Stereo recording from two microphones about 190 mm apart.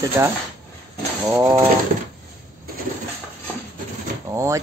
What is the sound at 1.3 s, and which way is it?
Speech, 10° right (ahead or behind).